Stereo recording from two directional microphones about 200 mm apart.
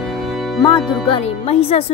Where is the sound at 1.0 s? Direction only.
30° left (ahead or behind).